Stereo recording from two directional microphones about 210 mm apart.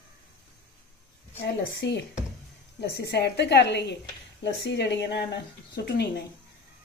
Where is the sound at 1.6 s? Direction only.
55° left (ahead or behind).